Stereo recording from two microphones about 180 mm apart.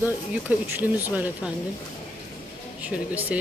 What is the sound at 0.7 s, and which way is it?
Speech, 10° right (ahead or behind).